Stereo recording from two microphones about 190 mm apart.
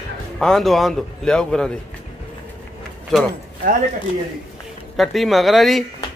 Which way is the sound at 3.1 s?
5° left (ahead or behind).